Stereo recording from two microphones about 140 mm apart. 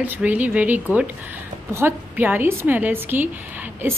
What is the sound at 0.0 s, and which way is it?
A woman's voice, 10° right (ahead or behind).